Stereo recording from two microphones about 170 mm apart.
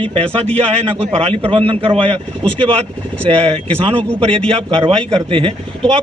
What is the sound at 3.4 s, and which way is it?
Speech, 35° right (ahead or behind).